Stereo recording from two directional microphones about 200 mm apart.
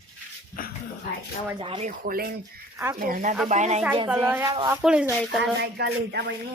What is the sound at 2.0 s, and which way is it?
Speech, 45° right (ahead or behind).